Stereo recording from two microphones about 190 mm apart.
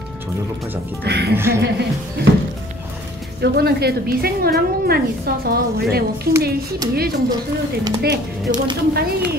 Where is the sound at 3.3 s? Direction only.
55° right (ahead or behind).